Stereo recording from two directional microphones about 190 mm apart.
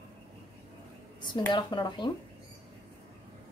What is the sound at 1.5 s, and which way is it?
Speech, 25° left (ahead or behind).